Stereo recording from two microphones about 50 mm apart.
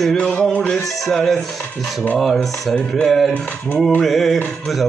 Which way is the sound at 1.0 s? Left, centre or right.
Centre.